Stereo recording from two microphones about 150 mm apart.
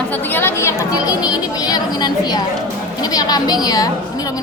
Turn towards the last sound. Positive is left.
turn(degrees=25)  # may be behind; listen again after turning